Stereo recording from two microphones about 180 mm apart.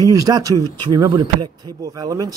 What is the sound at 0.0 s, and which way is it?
Speech, 20° right (ahead or behind).